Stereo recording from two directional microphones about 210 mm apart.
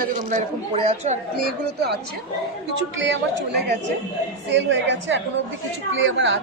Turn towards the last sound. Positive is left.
turn(degrees=-60)  # may be behind; listen again after turning